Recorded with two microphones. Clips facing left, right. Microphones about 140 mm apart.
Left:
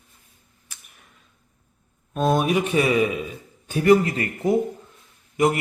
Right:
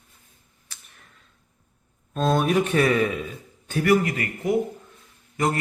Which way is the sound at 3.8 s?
30° left (ahead or behind).